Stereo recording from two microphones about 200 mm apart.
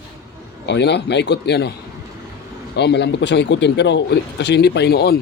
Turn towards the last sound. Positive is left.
turn(degrees=55)  # may be behind; listen again after turning